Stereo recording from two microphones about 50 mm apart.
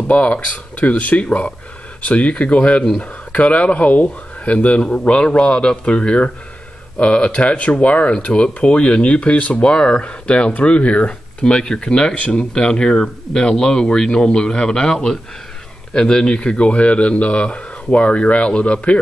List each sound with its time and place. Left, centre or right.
0.1 s speech: left